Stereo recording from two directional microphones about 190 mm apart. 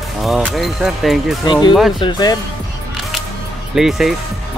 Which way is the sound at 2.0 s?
20° left (ahead or behind).